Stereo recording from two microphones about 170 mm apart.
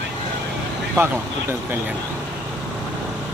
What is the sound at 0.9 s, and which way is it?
Speech, 10° right (ahead or behind).